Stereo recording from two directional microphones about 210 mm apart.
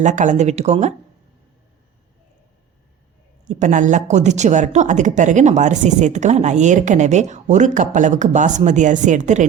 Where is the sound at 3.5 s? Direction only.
35° right (ahead or behind).